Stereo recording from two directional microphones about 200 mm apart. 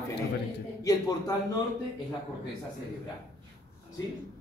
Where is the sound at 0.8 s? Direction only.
20° left (ahead or behind).